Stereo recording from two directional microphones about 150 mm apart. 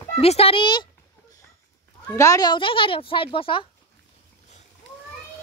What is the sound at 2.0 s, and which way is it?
Speech, 20° left (ahead or behind).